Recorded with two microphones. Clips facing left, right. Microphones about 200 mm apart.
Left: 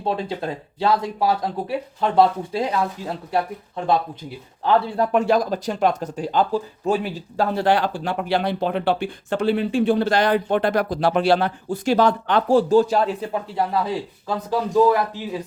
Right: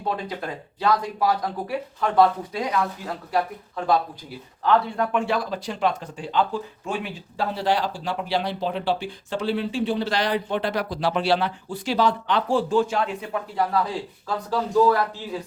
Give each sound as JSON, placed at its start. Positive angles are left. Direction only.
{"t": 0.0, "sound": "speech", "side_deg": 25}
{"t": 4.6, "sound": "speech", "side_deg": 35}
{"t": 13.6, "sound": "a man's voice", "side_deg": 25}